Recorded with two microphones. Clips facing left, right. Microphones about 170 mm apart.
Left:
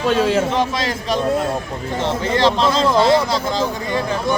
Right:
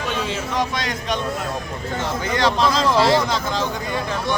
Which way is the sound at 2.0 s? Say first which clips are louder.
Left 4 dB; 30° left (ahead or behind).